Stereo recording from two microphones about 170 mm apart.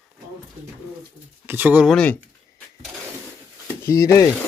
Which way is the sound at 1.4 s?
10° right (ahead or behind).